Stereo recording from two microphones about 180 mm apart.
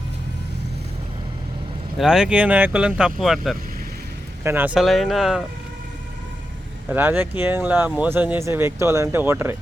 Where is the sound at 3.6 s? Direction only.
55° right (ahead or behind).